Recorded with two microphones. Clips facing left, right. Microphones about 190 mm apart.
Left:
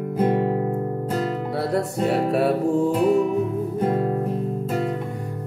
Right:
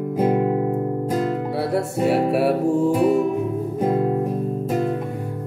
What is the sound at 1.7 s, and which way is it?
Music, 5° right (ahead or behind).